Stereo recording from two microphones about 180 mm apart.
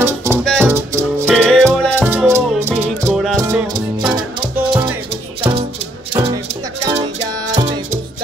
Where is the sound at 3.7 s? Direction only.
25° right (ahead or behind).